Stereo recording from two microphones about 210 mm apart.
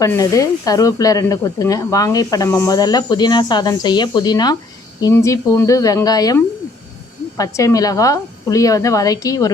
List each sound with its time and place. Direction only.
0.0 s speech: 15° left (ahead or behind)